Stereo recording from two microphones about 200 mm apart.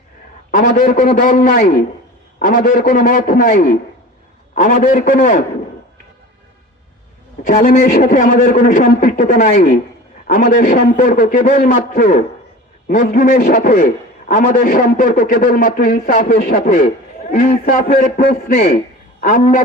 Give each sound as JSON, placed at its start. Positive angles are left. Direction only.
{"t": 0.5, "sound": "a man's voice", "side_deg": 45}
{"t": 7.4, "sound": "a man's voice", "side_deg": 40}